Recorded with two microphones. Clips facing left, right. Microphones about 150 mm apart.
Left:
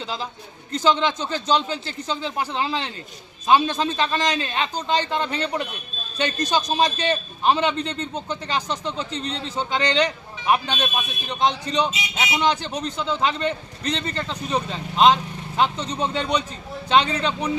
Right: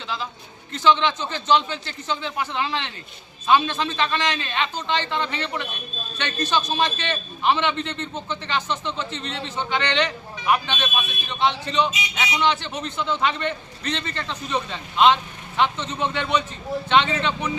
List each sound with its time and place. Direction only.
0.7 s a man's voice: 40° left (ahead or behind)
6.6 s a man's voice: 15° left (ahead or behind)
6.8 s a man's voice: 40° left (ahead or behind)